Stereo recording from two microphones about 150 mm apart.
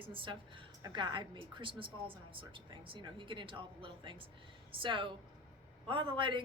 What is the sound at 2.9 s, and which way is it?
Speech, 35° right (ahead or behind).